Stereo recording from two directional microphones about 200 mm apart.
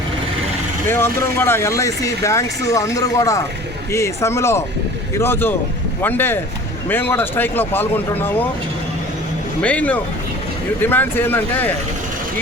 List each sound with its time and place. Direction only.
0.9 s speech: 10° left (ahead or behind)
9.6 s speech: 5° left (ahead or behind)